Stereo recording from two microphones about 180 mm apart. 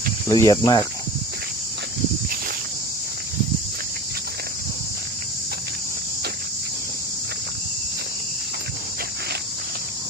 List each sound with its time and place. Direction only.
0.3 s speech: 20° left (ahead or behind)